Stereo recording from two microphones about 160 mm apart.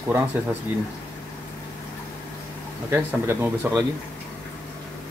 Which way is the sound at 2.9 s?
15° right (ahead or behind).